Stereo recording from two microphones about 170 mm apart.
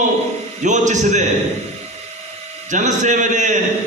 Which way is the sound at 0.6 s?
45° right (ahead or behind).